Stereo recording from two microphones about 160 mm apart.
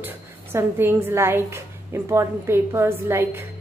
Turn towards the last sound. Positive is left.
turn(degrees=-15)  # may be behind; listen again after turning